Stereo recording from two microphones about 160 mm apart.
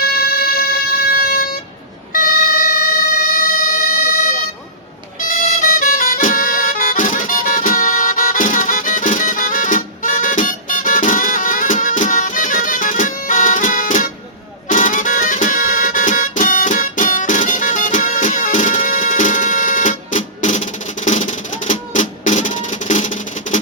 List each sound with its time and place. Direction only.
0.0 s music: 75° left (ahead or behind)
5.8 s music: 60° left (ahead or behind)